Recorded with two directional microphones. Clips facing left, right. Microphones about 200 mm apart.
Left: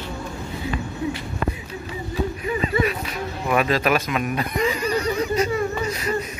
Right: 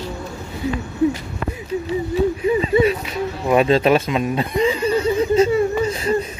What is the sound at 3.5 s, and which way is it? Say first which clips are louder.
Chuckle: right 6 dB; 25° right (ahead or behind).